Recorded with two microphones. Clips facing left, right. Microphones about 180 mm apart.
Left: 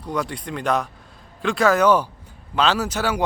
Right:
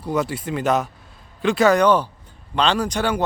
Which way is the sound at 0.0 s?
5° right (ahead or behind).